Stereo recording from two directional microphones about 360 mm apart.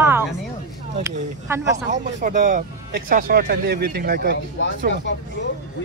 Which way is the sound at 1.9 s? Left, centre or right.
Right.